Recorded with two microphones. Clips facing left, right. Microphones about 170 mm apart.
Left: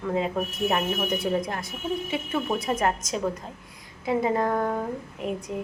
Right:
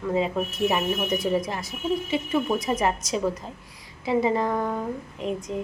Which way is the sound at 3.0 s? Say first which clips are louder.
Right 3 dB; 50° left (ahead or behind).